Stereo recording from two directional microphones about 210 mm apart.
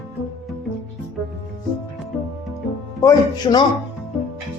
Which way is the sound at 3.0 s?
20° left (ahead or behind).